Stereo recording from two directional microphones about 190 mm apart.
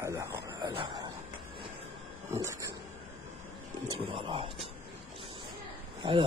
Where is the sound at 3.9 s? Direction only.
30° right (ahead or behind).